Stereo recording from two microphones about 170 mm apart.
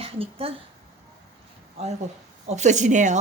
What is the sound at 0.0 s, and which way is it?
Speech, 35° right (ahead or behind).